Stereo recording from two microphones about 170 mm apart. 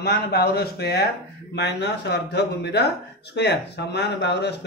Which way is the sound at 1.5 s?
85° left.